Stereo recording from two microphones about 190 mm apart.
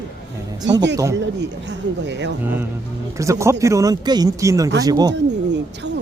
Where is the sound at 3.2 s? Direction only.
15° right (ahead or behind).